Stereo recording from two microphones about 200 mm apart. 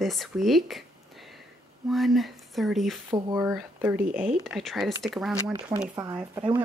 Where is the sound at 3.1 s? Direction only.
20° right (ahead or behind); by 5.3 s centre (ahead or behind).